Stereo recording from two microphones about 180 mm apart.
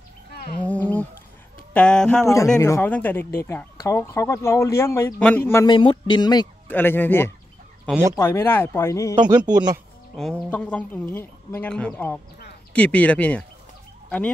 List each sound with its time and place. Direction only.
0.3 s wild animals: 60° left (ahead or behind)
0.6 s a sound: 10° left (ahead or behind)
1.7 s speech: 5° left (ahead or behind)
2.2 s speech: 15° left (ahead or behind)
5.8 s speech: 25° left (ahead or behind)
6.7 s speech: 10° left (ahead or behind)
9.1 s a man's voice: 25° right (ahead or behind)
10.1 s speech: 5° left (ahead or behind)